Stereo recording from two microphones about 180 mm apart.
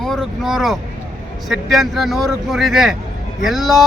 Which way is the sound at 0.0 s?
Centre (ahead or behind).